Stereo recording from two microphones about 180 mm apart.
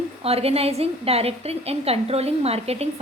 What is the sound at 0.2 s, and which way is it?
A woman's voice, 35° right (ahead or behind).